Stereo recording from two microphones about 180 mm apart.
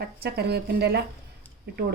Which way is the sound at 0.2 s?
60° right (ahead or behind).